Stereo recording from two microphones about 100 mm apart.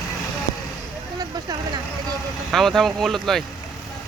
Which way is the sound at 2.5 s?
Centre (ahead or behind).